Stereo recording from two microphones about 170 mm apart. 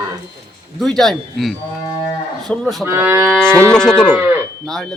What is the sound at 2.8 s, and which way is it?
Cattle, 15° right (ahead or behind).